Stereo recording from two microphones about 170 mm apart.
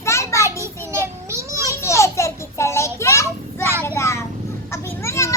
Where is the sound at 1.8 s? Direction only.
15° left (ahead or behind).